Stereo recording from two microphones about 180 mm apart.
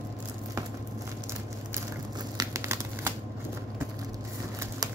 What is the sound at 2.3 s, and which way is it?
Crumpling, 15° right (ahead or behind).